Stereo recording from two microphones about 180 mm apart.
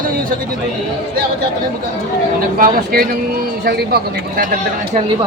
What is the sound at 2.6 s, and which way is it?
Speech, 55° right (ahead or behind).